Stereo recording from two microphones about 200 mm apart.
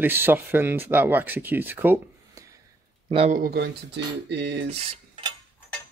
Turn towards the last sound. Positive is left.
turn(degrees=-30)  # may be behind; listen again after turning